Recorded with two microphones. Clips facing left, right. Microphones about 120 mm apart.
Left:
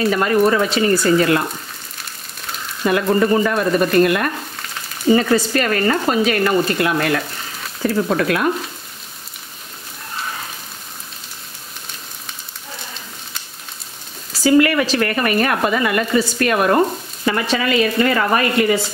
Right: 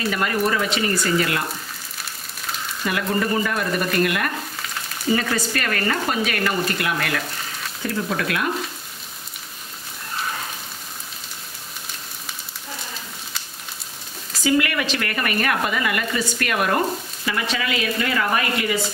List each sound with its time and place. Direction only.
0.1 s speech: 35° left (ahead or behind)
2.8 s speech: 30° left (ahead or behind)
14.4 s speech: 35° left (ahead or behind)